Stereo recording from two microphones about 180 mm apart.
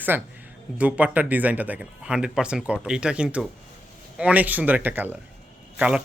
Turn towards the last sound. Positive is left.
turn(degrees=-5)  # may be behind; listen again after turning